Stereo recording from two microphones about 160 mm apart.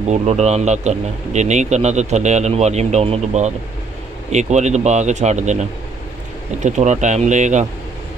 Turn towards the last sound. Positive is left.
turn(degrees=-50)  # may be behind; listen again after turning